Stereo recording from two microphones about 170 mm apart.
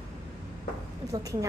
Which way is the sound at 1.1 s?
20° right (ahead or behind).